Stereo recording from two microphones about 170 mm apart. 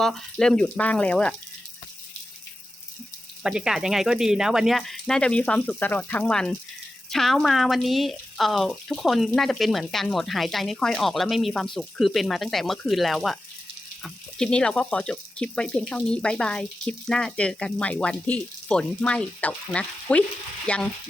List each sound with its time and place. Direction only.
0.0 s speech: centre (ahead or behind)
3.4 s speech: 5° right (ahead or behind)
20.7 s frying: 5° left (ahead or behind)